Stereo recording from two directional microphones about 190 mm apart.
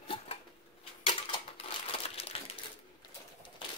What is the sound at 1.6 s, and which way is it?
Crumpling, 30° left (ahead or behind).